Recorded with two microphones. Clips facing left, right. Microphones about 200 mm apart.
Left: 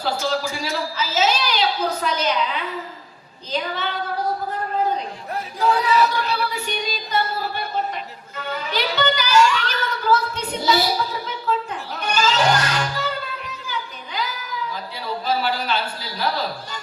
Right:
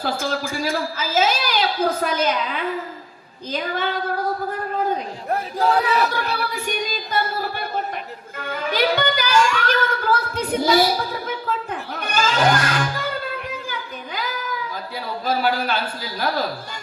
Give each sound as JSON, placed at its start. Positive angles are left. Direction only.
{"t": 0.0, "sound": "a woman's voice", "side_deg": -50}
{"t": 3.5, "sound": "female singing", "side_deg": -50}
{"t": 5.3, "sound": "a sound", "side_deg": -55}
{"t": 8.4, "sound": "music", "side_deg": -50}
{"t": 15.3, "sound": "a man's voice", "side_deg": -50}